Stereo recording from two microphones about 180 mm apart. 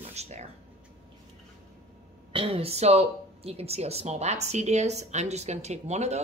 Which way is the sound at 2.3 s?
30° right (ahead or behind).